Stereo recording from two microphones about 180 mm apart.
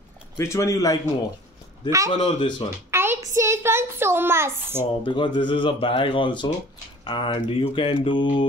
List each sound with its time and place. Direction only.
0.4 s a man's voice: 15° left (ahead or behind)
2.0 s speech: 30° left (ahead or behind)
2.9 s a sound: 15° right (ahead or behind)
3.3 s a child's voice: 15° right (ahead or behind)
5.0 s speech: 25° left (ahead or behind)